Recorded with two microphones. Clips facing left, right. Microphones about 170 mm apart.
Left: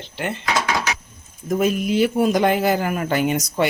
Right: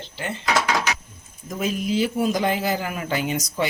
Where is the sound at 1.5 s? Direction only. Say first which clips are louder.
Left 5 dB; 55° left (ahead or behind).